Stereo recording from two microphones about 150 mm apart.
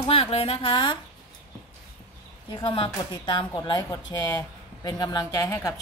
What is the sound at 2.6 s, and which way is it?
A woman's voice, 35° left (ahead or behind).